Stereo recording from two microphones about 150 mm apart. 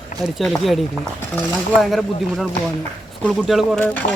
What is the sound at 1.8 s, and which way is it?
Speech, centre (ahead or behind).